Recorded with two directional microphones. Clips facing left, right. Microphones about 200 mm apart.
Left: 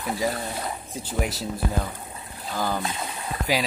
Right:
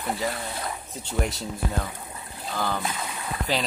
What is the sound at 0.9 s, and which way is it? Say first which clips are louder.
Speech: even; 5° left (ahead or behind).